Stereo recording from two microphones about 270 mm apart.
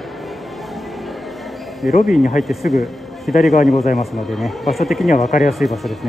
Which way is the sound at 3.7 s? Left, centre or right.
Left.